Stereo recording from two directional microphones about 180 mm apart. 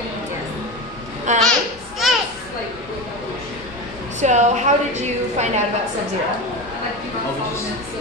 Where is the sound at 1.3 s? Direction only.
40° right (ahead or behind).